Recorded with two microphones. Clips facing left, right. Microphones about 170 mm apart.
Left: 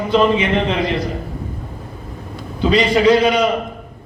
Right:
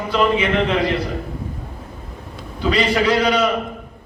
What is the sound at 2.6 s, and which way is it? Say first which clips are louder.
Speech: left 4 dB; 20° left (ahead or behind).